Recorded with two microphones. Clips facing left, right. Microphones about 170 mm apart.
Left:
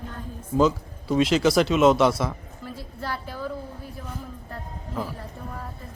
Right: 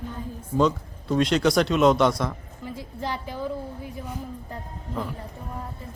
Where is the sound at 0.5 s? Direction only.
5° left (ahead or behind).